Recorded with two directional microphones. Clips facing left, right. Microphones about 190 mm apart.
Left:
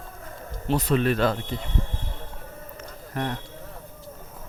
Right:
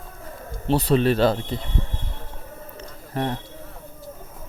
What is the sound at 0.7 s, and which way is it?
Speech, 30° right (ahead or behind).